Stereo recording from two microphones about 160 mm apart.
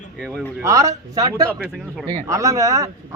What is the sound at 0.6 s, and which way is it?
A man's voice, 20° right (ahead or behind).